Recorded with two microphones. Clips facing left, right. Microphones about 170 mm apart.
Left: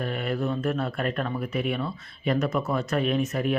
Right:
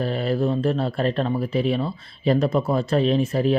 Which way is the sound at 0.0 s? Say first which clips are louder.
Right 5 dB; 30° right (ahead or behind).